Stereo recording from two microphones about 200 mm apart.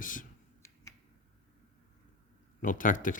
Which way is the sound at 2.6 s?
40° left (ahead or behind).